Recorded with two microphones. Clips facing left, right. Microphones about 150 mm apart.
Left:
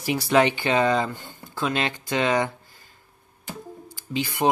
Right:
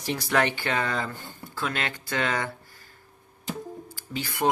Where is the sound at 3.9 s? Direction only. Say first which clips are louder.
Left 11 dB; 15° left (ahead or behind).